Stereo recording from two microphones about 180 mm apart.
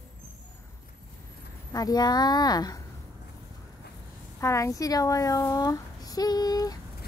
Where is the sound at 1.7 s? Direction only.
20° left (ahead or behind).